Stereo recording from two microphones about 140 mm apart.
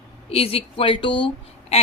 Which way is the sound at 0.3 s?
45° left (ahead or behind).